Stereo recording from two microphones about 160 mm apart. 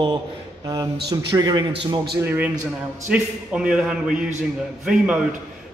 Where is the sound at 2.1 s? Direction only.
15° right (ahead or behind).